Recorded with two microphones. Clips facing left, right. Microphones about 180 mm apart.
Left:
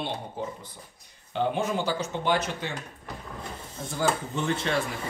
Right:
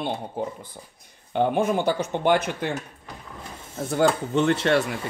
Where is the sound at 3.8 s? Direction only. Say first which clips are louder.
Right 6 dB; 65° right (ahead or behind).